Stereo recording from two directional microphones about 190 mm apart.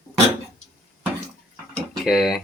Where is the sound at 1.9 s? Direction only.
Centre (ahead or behind).